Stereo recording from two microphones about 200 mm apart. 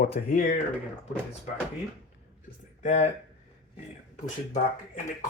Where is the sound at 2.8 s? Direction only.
35° left (ahead or behind).